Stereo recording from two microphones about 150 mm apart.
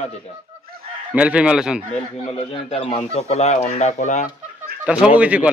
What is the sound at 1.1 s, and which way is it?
Speech, 10° right (ahead or behind).